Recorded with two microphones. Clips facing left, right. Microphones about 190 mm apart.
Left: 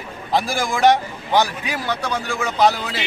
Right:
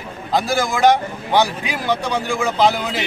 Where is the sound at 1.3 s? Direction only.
10° right (ahead or behind).